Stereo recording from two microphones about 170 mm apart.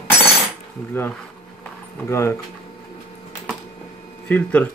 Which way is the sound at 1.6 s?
15° left (ahead or behind).